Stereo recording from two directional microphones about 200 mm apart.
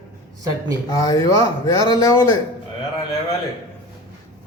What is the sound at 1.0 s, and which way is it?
Speech, 15° left (ahead or behind).